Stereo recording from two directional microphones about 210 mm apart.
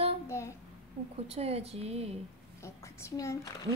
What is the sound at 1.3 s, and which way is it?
Speech, 30° right (ahead or behind).